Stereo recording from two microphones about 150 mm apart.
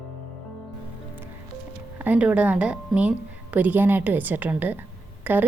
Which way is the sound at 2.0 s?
10° right (ahead or behind).